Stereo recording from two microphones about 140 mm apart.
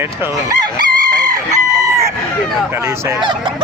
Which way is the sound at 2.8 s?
20° right (ahead or behind).